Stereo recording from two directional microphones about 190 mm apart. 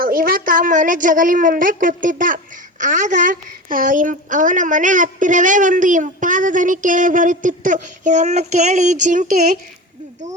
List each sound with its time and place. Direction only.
0.0 s a woman's voice: 50° right (ahead or behind)